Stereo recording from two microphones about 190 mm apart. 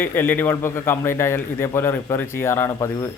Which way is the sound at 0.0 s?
10° left (ahead or behind).